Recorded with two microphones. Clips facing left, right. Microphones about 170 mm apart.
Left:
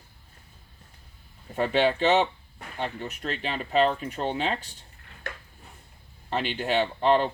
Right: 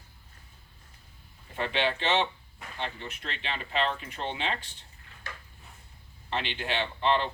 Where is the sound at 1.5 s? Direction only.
45° left (ahead or behind).